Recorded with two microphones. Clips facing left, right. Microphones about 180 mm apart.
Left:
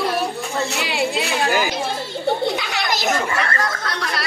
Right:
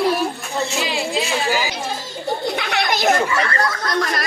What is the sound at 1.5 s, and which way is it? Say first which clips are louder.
Chatter: left 1 dB; 55° left (ahead or behind).